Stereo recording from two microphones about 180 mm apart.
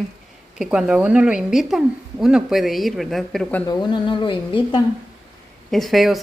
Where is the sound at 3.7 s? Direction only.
25° left (ahead or behind).